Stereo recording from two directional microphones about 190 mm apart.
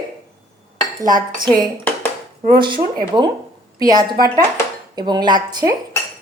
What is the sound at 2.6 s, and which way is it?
A woman's voice, 25° right (ahead or behind).